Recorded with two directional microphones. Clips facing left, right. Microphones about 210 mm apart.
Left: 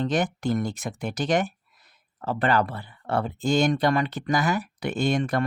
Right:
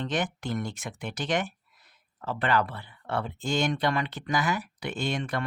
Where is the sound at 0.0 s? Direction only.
40° left (ahead or behind).